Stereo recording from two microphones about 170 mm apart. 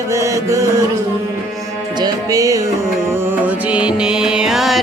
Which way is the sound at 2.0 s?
20° right (ahead or behind).